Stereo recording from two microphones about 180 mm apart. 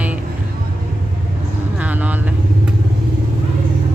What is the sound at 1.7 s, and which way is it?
Vehicle, 10° right (ahead or behind).